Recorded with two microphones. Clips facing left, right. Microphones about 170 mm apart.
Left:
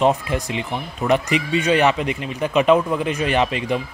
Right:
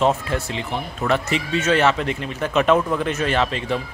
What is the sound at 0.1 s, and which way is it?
Speech, 15° left (ahead or behind).